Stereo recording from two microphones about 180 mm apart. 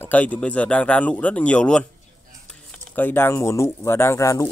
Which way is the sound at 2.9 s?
10° left (ahead or behind).